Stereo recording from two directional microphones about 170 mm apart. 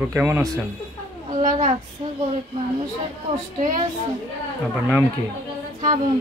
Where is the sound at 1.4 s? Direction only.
50° right (ahead or behind).